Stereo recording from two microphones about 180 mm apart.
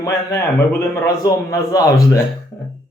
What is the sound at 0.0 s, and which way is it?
A man's voice, 15° left (ahead or behind).